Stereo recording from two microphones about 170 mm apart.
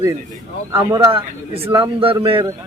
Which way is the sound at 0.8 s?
30° right (ahead or behind).